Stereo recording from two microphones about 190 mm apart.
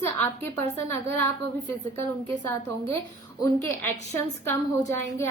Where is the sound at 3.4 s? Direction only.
15° left (ahead or behind).